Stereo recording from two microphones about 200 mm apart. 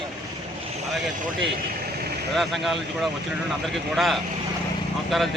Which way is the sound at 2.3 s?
Centre (ahead or behind).